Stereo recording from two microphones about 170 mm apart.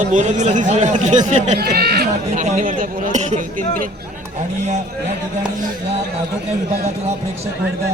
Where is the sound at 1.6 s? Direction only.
65° right (ahead or behind).